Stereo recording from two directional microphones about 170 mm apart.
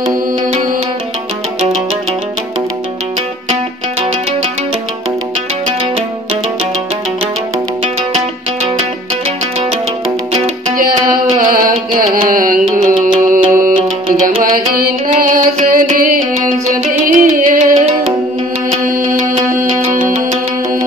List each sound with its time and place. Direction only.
5.7 s music: 35° right (ahead or behind)
9.6 s music: 35° right (ahead or behind)
12.2 s music: 55° right (ahead or behind)
17.7 s music: 35° right (ahead or behind)